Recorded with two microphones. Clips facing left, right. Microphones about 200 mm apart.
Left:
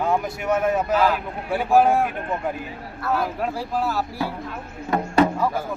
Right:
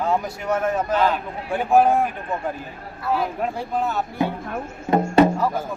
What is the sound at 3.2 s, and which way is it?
Speech, centre (ahead or behind).